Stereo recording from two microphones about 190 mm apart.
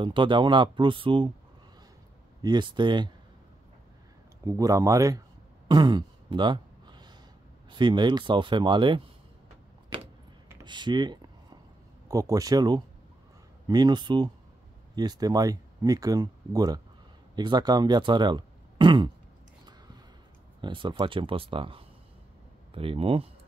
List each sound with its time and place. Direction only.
0.0 s speech: 25° right (ahead or behind)
2.4 s speech: 20° right (ahead or behind)
4.5 s speech: 15° right (ahead or behind)
5.7 s a sound: 20° right (ahead or behind)
7.7 s speech: 25° right (ahead or behind)
10.6 s a sound: 25° right (ahead or behind)
12.1 s speech: 15° right (ahead or behind)
20.6 s speech: 25° right (ahead or behind)